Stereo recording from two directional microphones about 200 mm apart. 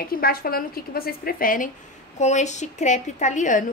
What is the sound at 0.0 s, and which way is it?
A woman's voice, 50° left (ahead or behind).